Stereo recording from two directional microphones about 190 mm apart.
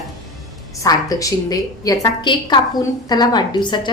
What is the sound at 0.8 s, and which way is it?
A woman's voice, 20° left (ahead or behind).